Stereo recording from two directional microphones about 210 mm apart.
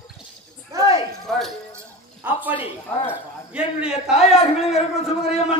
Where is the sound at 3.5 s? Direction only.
5° right (ahead or behind).